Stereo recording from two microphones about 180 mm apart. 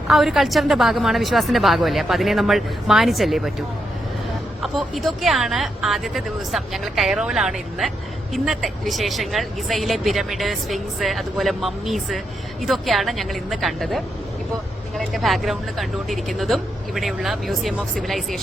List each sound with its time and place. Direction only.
0.1 s speech: centre (ahead or behind)
4.6 s speech: centre (ahead or behind)